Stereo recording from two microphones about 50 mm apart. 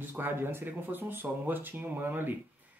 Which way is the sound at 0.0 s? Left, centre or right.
Right.